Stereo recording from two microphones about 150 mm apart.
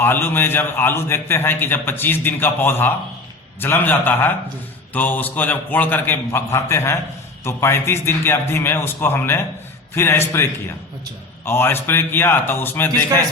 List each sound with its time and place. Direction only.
0.0 s a man's voice: 15° left (ahead or behind)